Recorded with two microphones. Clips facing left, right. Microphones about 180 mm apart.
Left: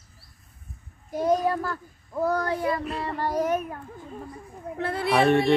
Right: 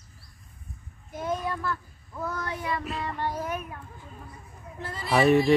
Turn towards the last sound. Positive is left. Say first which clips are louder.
# even
turn(degrees=0)  # may be behind; listen again after turning